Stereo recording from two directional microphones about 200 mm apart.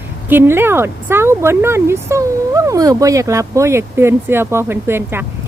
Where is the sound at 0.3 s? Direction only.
10° right (ahead or behind).